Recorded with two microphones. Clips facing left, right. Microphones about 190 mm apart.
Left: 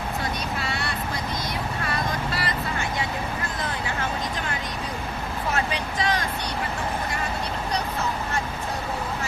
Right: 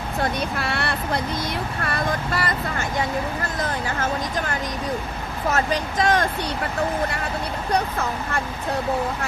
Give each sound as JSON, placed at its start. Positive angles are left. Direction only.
{"t": 0.2, "sound": "a sound", "side_deg": -60}
{"t": 1.8, "sound": "vehicle", "side_deg": -50}
{"t": 5.5, "sound": "speech", "side_deg": -45}